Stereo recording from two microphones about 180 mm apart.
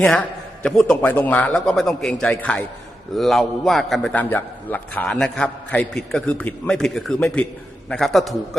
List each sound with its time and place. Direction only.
0.0 s a man's voice: 5° left (ahead or behind)